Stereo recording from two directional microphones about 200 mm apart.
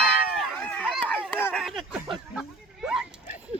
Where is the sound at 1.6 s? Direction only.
Centre (ahead or behind).